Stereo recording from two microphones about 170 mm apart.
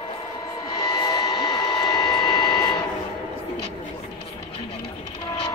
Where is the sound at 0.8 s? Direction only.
25° left (ahead or behind).